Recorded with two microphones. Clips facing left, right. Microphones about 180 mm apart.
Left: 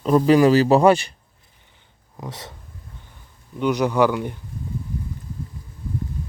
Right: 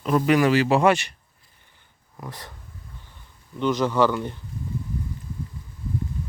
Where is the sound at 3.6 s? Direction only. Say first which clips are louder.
Left 2 dB; 15° left (ahead or behind).